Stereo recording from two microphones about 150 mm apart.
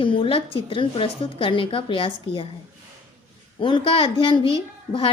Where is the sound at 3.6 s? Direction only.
35° left (ahead or behind).